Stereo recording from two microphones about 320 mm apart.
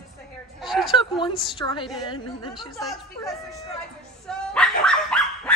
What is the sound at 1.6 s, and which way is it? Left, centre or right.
A woman's voice, centre.